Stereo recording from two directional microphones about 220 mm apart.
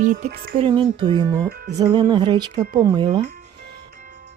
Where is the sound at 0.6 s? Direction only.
20° right (ahead or behind).